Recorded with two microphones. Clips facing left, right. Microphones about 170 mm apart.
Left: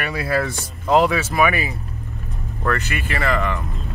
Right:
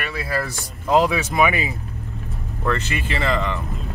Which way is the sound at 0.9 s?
15° right (ahead or behind).